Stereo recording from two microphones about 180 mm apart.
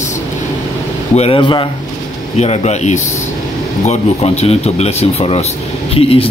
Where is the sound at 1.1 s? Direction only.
30° left (ahead or behind).